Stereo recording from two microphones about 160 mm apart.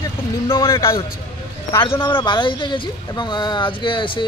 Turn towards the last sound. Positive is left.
turn(degrees=30)  # may be behind; listen again after turning